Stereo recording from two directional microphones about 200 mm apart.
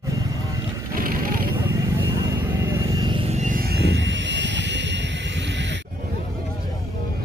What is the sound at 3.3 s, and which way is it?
Vehicle, 45° right (ahead or behind).